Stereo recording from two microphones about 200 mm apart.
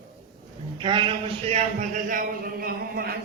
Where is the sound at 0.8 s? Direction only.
25° right (ahead or behind).